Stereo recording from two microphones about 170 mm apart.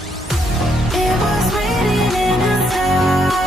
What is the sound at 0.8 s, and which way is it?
Music, centre (ahead or behind).